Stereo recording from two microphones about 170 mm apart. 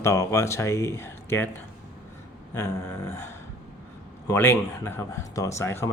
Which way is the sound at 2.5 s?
15° left (ahead or behind).